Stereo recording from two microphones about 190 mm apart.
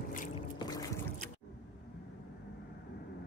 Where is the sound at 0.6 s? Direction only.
20° left (ahead or behind).